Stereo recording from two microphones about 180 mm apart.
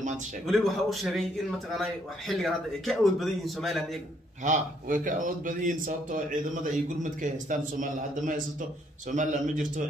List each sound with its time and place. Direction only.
0.5 s speech: centre (ahead or behind)
4.5 s a man's voice: 45° right (ahead or behind)